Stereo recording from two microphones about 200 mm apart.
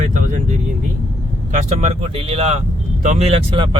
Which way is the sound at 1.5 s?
35° right (ahead or behind).